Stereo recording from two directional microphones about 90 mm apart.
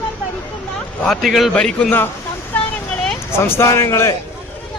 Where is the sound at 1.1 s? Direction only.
Centre (ahead or behind).